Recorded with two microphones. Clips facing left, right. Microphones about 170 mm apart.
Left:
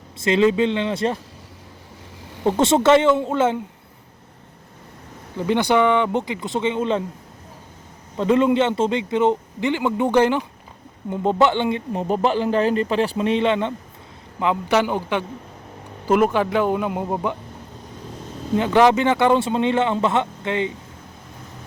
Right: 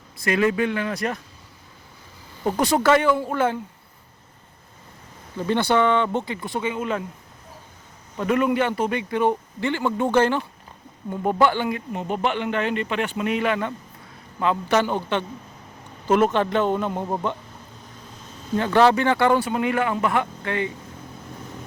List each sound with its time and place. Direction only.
0.2 s a man's voice: 25° left (ahead or behind)
2.4 s a man's voice: 25° left (ahead or behind)
5.4 s speech: 15° left (ahead or behind)
8.1 s a man's voice: 25° left (ahead or behind)
12.0 s speech: 35° left (ahead or behind); by 17.3 s 10° left (ahead or behind)
18.5 s a man's voice: 15° left (ahead or behind)